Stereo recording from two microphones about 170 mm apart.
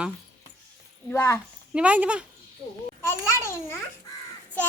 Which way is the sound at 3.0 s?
15° left (ahead or behind).